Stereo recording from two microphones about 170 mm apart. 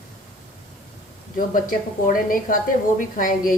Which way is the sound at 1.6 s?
55° left (ahead or behind).